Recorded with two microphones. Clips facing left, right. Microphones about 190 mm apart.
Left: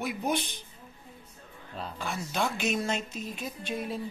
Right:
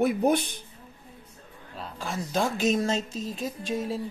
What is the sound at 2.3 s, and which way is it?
Speech, 35° right (ahead or behind).